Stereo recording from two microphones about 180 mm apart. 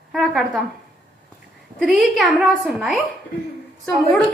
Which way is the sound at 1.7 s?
5° right (ahead or behind).